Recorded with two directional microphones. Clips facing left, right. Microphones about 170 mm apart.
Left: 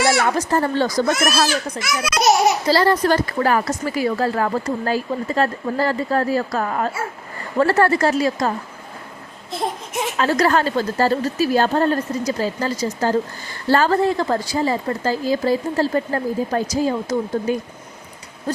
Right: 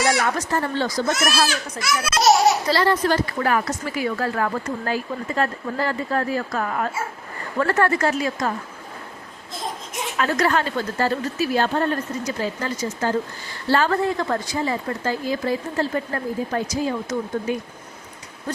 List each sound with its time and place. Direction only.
0.2 s a woman's voice: 35° left (ahead or behind)
1.0 s speech: 50° left (ahead or behind)
1.8 s a child's voice: 20° left (ahead or behind)
2.6 s a woman's voice: 35° left (ahead or behind)
9.5 s baby cry: 65° left (ahead or behind)
10.2 s a woman's voice: 35° left (ahead or behind)